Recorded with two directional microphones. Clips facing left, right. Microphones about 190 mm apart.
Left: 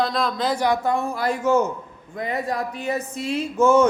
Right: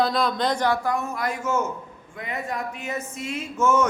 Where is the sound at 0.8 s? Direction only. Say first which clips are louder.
Left 4 dB; 30° left (ahead or behind).